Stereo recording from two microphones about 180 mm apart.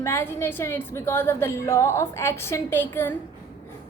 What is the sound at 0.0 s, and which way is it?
A woman's voice, 15° left (ahead or behind).